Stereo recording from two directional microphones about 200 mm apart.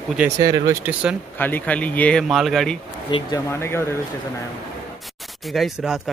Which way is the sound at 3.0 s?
25° left (ahead or behind).